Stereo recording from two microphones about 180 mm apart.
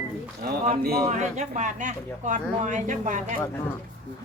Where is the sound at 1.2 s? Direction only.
40° right (ahead or behind).